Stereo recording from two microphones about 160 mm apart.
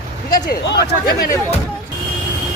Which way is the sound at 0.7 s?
80° left.